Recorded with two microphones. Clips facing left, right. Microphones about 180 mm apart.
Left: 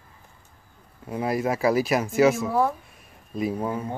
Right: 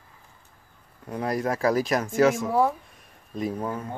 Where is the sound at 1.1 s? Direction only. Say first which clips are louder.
Left 2 dB; 5° left (ahead or behind).